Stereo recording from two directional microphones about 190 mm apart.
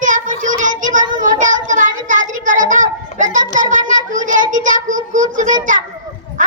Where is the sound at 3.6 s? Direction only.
45° right (ahead or behind).